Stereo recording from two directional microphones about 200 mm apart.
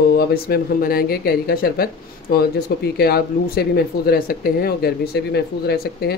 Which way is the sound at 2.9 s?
50° left (ahead or behind).